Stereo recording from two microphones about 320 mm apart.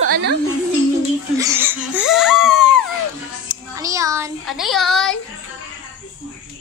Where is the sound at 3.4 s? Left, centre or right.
Centre.